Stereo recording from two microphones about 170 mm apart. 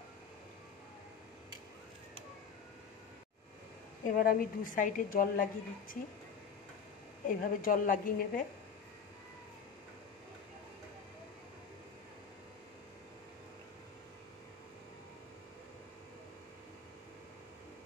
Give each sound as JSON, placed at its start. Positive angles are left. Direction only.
{"t": 4.2, "sound": "a woman's voice", "side_deg": 55}
{"t": 7.2, "sound": "a woman's voice", "side_deg": 55}